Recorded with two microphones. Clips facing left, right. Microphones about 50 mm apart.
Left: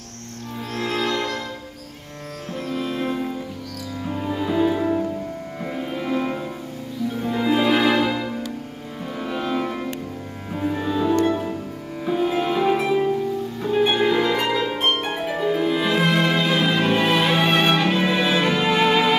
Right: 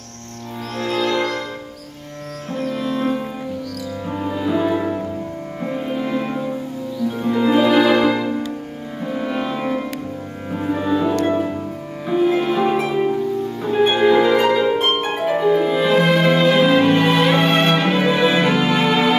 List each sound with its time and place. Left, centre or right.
0.7 s music: centre
2.6 s music: centre
4.2 s music: centre
7.2 s music: centre
8.0 s music: centre
13.6 s harp: centre
15.1 s music: centre
18.7 s music: centre